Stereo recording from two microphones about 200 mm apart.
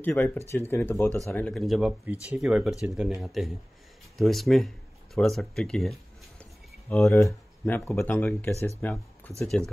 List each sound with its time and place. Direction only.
0.0 s speech: 10° left (ahead or behind)
7.2 s speech: 10° left (ahead or behind)